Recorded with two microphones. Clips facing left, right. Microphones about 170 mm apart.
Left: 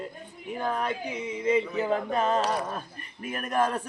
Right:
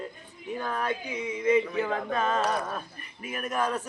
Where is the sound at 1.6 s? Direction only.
5° left (ahead or behind).